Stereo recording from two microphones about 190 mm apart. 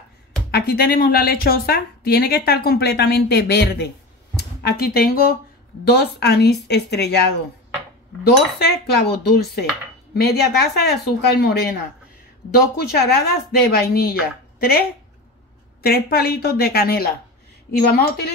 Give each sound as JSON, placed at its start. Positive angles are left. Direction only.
{"t": 0.5, "sound": "a woman's voice", "side_deg": 55}